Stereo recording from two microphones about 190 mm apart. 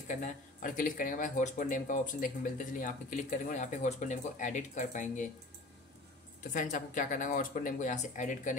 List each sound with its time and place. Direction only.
0.1 s speech: 45° left (ahead or behind)
6.4 s speech: 40° left (ahead or behind)